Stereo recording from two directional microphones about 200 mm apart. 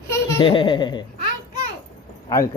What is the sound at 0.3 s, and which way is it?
Speech, 25° left (ahead or behind).